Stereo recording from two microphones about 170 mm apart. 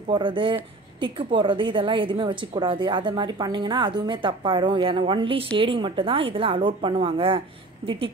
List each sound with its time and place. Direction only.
0.1 s a woman's voice: 30° right (ahead or behind)